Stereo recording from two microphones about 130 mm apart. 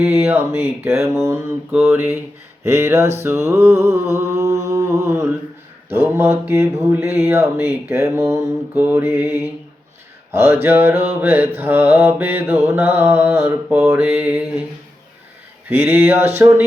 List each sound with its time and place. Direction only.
0.0 s mantra: 15° right (ahead or behind)
1.0 s mantra: 20° right (ahead or behind)
15.7 s mantra: 15° right (ahead or behind)